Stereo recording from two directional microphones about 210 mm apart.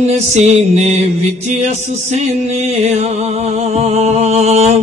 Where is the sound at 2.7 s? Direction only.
30° right (ahead or behind).